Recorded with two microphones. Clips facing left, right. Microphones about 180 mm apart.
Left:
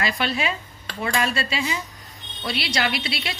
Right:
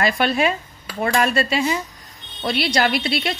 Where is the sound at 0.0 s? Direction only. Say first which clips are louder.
Right 6 dB; 50° right (ahead or behind).